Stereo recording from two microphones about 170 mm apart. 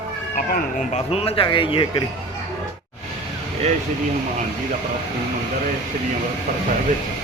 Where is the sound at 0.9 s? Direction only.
35° left (ahead or behind).